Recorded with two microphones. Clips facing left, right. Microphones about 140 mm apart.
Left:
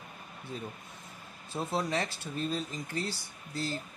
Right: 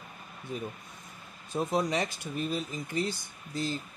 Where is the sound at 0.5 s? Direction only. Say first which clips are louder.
Right 4 dB; 20° right (ahead or behind).